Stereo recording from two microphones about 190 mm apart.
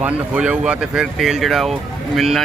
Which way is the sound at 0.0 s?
5° right (ahead or behind).